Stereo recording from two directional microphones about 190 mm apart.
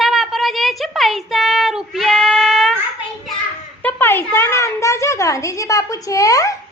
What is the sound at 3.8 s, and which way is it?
Speech, 10° left (ahead or behind).